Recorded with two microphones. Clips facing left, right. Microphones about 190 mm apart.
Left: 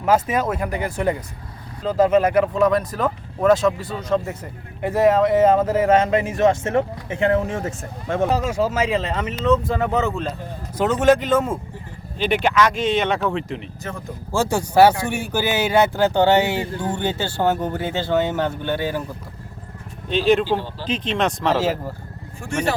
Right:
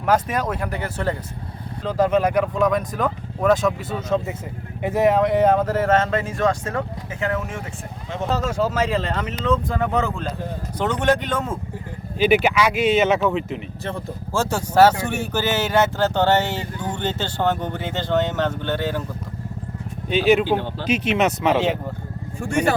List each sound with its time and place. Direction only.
0.0 s speech: 5° left (ahead or behind)
4.8 s speech: centre (ahead or behind); by 7.7 s 35° left (ahead or behind)
8.0 s speech: 55° left (ahead or behind)
8.4 s speech: 10° left (ahead or behind)
12.2 s speech: 5° right (ahead or behind)
14.3 s speech: 10° left (ahead or behind)
20.1 s speech: 5° right (ahead or behind)